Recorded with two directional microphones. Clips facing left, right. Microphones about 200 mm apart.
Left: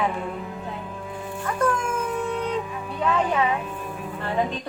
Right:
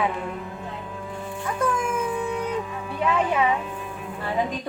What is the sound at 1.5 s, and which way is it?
Music, 5° right (ahead or behind).